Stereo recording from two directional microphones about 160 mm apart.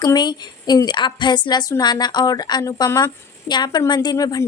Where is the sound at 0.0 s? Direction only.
25° left (ahead or behind).